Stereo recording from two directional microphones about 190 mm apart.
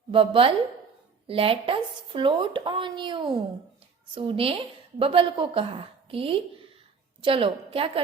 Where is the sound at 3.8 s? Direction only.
30° right (ahead or behind).